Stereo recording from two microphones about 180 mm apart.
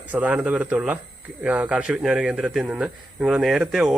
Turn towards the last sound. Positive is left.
turn(degrees=-5)  # may be behind; listen again after turning